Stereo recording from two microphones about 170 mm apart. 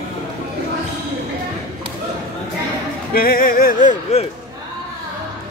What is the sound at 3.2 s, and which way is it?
Music, 60° left (ahead or behind).